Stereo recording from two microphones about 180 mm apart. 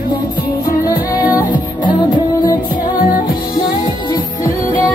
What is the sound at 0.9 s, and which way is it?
Music, 20° left (ahead or behind).